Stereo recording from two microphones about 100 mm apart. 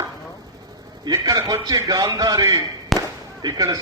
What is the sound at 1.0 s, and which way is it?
A man's voice, 40° right (ahead or behind).